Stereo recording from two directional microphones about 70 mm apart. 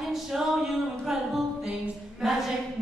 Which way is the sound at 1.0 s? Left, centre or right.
Centre.